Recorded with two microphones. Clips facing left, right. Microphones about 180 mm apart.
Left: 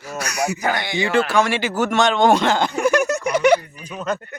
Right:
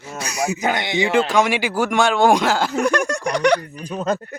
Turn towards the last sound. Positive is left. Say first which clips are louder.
# right 3 dB
turn(degrees=-35)  # may be behind; listen again after turning